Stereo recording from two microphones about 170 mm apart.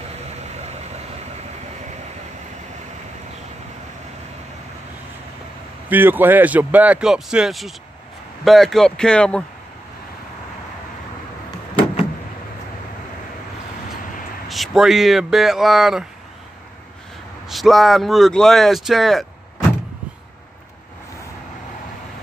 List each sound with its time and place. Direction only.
5.9 s speech: 10° right (ahead or behind); by 9.4 s 5° left (ahead or behind)
14.5 s speech: centre (ahead or behind)
17.5 s speech: centre (ahead or behind)